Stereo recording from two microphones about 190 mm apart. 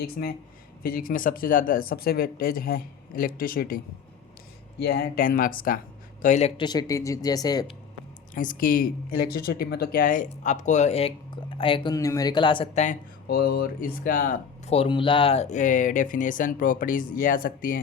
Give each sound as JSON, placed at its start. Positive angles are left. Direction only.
{"t": 0.0, "sound": "speech", "side_deg": 55}
{"t": 4.8, "sound": "speech", "side_deg": 55}
{"t": 6.6, "sound": "speech", "side_deg": 20}
{"t": 8.4, "sound": "speech", "side_deg": 45}
{"t": 12.8, "sound": "speech", "side_deg": 45}
{"t": 14.7, "sound": "speech", "side_deg": 30}